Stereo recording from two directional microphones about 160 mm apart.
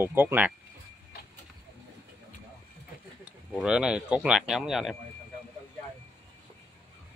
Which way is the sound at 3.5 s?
5° right (ahead or behind).